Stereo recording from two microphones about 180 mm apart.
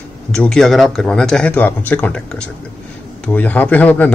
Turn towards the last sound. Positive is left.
turn(degrees=10)  # may be behind; listen again after turning